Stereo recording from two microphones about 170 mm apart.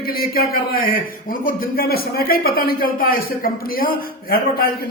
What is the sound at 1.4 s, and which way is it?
A man's voice, 60° left (ahead or behind).